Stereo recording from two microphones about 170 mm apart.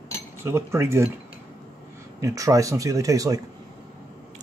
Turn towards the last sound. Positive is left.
turn(degrees=-20)  # may be behind; listen again after turning